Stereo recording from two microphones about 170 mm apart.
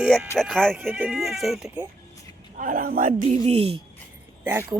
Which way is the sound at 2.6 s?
55° right (ahead or behind).